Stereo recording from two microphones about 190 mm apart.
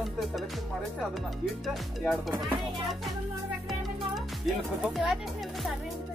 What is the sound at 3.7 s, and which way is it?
Music, centre (ahead or behind).